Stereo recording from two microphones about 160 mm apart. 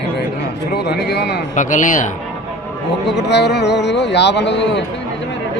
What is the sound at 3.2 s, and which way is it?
Speech, 90° left.